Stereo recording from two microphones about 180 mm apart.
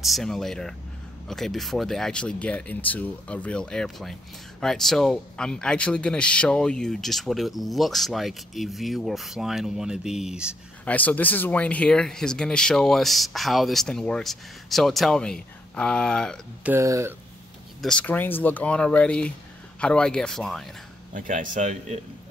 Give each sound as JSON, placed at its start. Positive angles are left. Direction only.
{"t": 0.0, "sound": "speech", "side_deg": 0}
{"t": 10.9, "sound": "speech", "side_deg": 10}
{"t": 16.6, "sound": "speech", "side_deg": -15}
{"t": 17.8, "sound": "speech", "side_deg": 5}
{"t": 21.1, "sound": "a man's voice", "side_deg": -45}